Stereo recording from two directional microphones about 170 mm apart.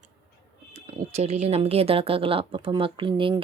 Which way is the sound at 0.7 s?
40° right (ahead or behind).